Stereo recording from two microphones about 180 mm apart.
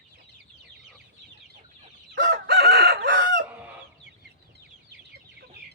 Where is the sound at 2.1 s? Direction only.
70° right (ahead or behind).